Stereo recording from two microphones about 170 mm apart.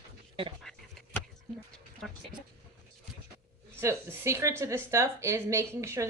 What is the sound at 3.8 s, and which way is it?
Speech, 15° right (ahead or behind).